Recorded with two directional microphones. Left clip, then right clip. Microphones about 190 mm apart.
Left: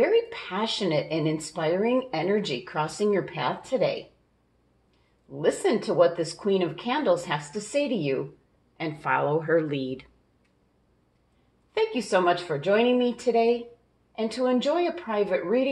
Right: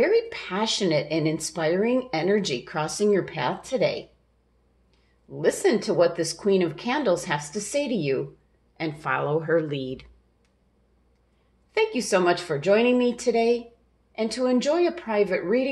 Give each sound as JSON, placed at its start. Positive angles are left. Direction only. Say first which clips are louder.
{"t": 0.0, "sound": "a woman's voice", "louder": "right 1 dB", "side_deg": -20}
{"t": 5.4, "sound": "a woman's voice", "louder": "right 2 dB", "side_deg": -20}
{"t": 11.7, "sound": "a woman's voice", "louder": "right 1 dB", "side_deg": -20}